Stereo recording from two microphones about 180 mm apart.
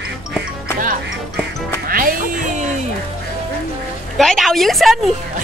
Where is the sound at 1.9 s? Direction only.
50° right (ahead or behind).